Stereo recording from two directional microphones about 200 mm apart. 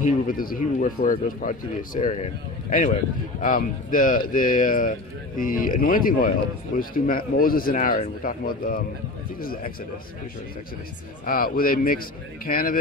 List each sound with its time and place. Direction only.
0.0 s speech: 45° left (ahead or behind)
11.2 s speech: 45° left (ahead or behind)